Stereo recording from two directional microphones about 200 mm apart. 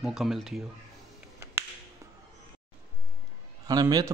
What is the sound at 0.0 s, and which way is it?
Speech, centre (ahead or behind).